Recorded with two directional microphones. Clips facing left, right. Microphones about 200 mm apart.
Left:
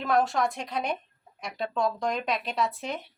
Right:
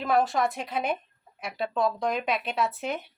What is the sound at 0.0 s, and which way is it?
A woman's voice, centre (ahead or behind).